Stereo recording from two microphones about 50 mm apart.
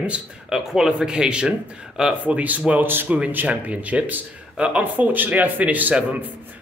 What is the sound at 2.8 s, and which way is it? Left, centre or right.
Speech, right.